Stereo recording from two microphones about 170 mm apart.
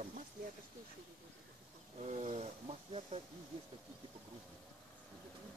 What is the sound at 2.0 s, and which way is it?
Speech, 40° right (ahead or behind).